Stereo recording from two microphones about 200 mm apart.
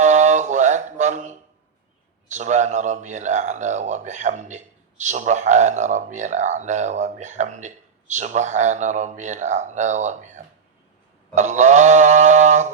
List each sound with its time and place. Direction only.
0.0 s mantra: 35° right (ahead or behind)
2.3 s speech: 35° right (ahead or behind)